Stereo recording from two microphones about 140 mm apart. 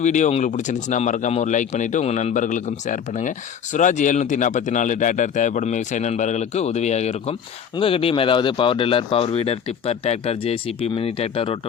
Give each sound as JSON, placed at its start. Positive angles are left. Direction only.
{"t": 0.0, "sound": "speech", "side_deg": 60}
{"t": 7.8, "sound": "speech", "side_deg": 40}